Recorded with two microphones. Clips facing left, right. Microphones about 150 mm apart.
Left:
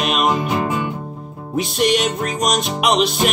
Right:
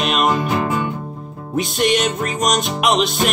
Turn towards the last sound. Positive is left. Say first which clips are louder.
# left 1 dB
turn(degrees=0)  # may be behind; listen again after turning